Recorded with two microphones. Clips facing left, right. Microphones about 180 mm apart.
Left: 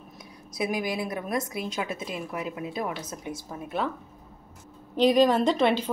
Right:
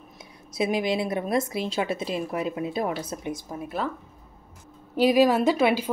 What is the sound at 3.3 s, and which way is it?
Speech, 15° right (ahead or behind).